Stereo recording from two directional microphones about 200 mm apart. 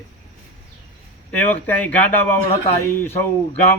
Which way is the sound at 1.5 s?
10° left (ahead or behind).